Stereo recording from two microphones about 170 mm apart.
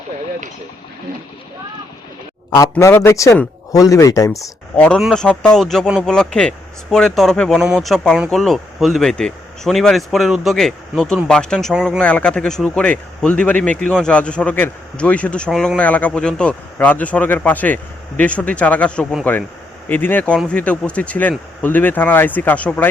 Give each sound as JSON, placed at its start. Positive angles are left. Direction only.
{"t": 2.6, "sound": "speech", "side_deg": 15}
{"t": 4.8, "sound": "a man's voice", "side_deg": 5}